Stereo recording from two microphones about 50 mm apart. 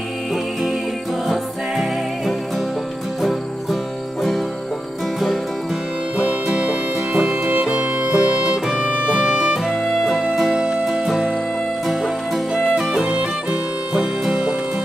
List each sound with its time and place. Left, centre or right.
1.2 s music: centre
6.2 s music: centre
9.2 s music: centre
10.6 s music: centre
11.8 s music: centre